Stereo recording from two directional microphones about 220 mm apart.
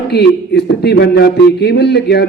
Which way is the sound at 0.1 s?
50° left (ahead or behind).